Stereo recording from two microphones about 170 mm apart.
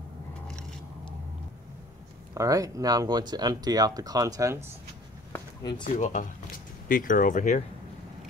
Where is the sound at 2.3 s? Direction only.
20° right (ahead or behind).